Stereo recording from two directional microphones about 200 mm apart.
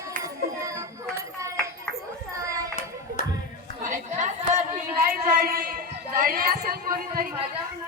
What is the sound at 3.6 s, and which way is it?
Chatter, 40° right (ahead or behind).